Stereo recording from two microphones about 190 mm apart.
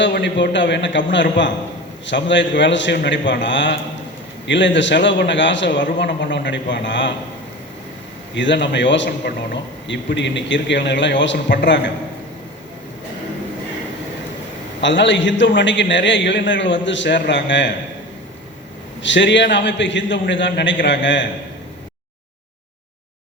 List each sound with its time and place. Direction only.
0.0 s a man's voice: 70° left (ahead or behind)
8.4 s a man's voice: 70° left (ahead or behind)
14.8 s a man's voice: 70° left (ahead or behind)
19.0 s a man's voice: 75° left (ahead or behind)